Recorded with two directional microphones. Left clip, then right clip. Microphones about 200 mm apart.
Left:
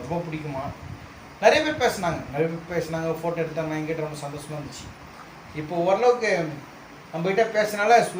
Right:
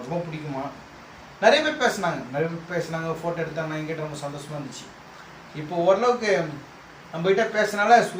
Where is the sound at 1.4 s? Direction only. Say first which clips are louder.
Even; 15° left (ahead or behind).